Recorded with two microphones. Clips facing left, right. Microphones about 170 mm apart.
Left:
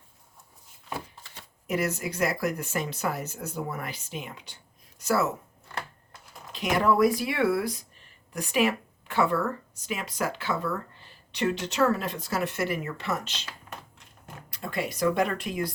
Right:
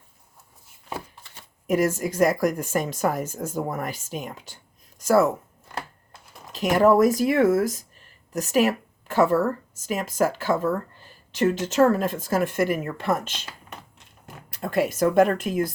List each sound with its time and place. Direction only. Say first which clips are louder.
1.6 s a woman's voice: right 6 dB; 45° right (ahead or behind)
6.5 s a woman's voice: right 6 dB; 45° right (ahead or behind)
14.6 s a woman's voice: right 6 dB; 50° right (ahead or behind)